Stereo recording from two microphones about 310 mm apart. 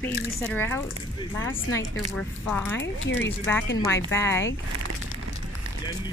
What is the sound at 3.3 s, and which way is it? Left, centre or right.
Speech, centre.